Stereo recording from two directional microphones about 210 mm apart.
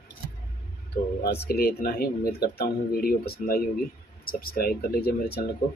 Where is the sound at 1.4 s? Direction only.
45° left (ahead or behind).